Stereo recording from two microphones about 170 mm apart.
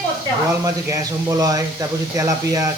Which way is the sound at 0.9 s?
20° right (ahead or behind).